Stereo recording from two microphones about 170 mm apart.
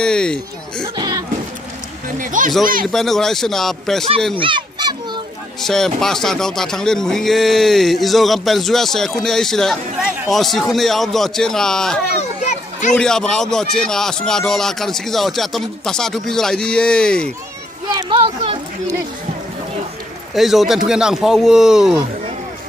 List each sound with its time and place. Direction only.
0.0 s speech: 5° left (ahead or behind)
0.9 s a sound: 25° right (ahead or behind)
2.0 s speech: 50° right (ahead or behind)
2.9 s speech: centre (ahead or behind)
4.4 s children playing: 30° right (ahead or behind)
5.6 s speech: centre (ahead or behind)
12.2 s a sound: 45° left (ahead or behind)
12.9 s speech: 5° left (ahead or behind)
17.9 s speech: 30° right (ahead or behind)
20.3 s speech: centre (ahead or behind)